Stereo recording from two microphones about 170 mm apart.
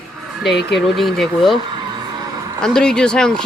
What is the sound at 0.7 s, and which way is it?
Speech, centre (ahead or behind).